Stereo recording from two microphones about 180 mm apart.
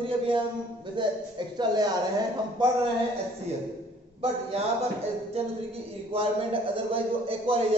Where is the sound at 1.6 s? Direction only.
20° right (ahead or behind).